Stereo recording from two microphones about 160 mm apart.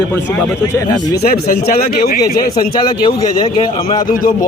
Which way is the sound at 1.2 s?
70° left (ahead or behind).